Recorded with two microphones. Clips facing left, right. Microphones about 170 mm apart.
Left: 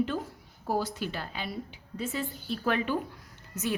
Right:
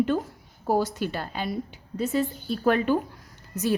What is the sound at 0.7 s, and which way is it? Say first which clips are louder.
A woman's voice: right 6 dB; 45° right (ahead or behind).